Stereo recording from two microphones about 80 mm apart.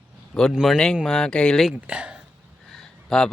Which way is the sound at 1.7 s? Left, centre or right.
Centre.